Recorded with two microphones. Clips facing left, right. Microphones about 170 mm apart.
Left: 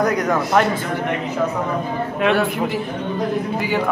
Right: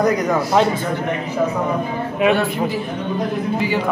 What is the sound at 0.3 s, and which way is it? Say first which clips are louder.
Speech: right 1 dB; 10° right (ahead or behind).